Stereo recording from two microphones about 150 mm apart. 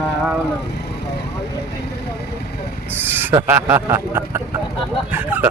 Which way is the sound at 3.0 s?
15° right (ahead or behind).